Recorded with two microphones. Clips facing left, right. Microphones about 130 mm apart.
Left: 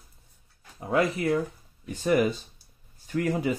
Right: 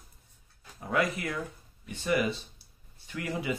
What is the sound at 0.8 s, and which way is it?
Speech, 30° left (ahead or behind).